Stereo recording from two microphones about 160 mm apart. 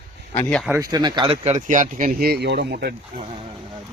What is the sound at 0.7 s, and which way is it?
Speech, 20° right (ahead or behind).